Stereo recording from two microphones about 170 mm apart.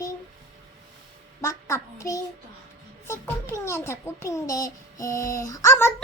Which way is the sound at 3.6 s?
15° left (ahead or behind).